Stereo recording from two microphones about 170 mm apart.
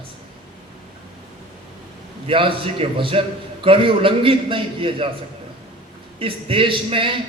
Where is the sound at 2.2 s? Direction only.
30° right (ahead or behind).